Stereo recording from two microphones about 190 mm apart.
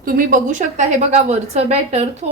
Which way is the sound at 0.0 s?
45° right (ahead or behind).